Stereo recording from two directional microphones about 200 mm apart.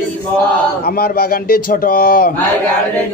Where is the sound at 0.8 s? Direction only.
50° left (ahead or behind).